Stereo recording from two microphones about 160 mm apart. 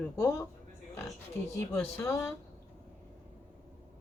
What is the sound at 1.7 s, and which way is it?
Speech, 15° left (ahead or behind).